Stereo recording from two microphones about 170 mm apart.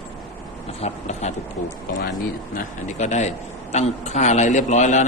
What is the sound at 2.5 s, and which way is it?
A man's voice, 45° left (ahead or behind).